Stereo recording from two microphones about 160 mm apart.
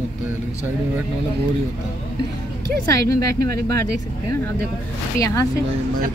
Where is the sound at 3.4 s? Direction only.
75° right (ahead or behind).